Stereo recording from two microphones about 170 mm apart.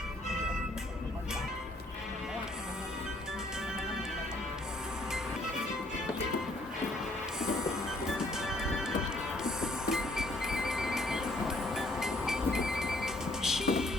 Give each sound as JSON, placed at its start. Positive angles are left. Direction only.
{"t": 7.3, "sound": "music", "side_deg": -5}
{"t": 9.4, "sound": "train", "side_deg": -5}